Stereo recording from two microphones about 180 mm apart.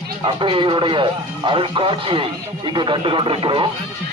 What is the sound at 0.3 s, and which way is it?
Speech, 30° right (ahead or behind).